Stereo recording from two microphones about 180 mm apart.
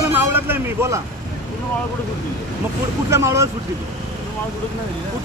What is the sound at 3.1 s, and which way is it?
Speech, 15° right (ahead or behind).